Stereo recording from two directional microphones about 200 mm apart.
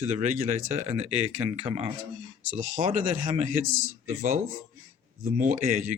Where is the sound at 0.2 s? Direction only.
35° right (ahead or behind).